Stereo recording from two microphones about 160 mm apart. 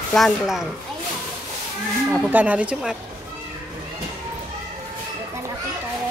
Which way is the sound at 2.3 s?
10° right (ahead or behind).